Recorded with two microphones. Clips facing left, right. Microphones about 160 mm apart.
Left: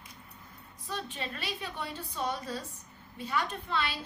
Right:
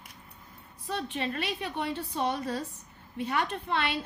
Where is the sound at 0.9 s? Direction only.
65° right (ahead or behind).